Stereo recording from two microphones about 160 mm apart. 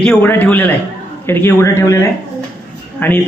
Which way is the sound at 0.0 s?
10° left (ahead or behind).